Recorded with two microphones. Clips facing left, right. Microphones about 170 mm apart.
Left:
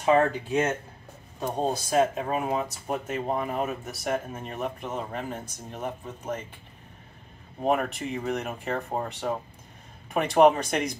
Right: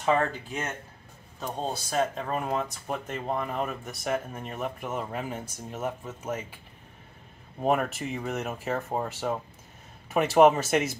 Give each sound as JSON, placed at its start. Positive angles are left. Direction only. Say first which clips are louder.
{"t": 0.0, "sound": "speech", "louder": "left 4 dB", "side_deg": 15}
{"t": 7.6, "sound": "speech", "louder": "even", "side_deg": 0}